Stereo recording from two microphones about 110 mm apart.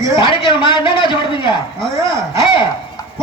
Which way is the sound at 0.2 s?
50° left (ahead or behind).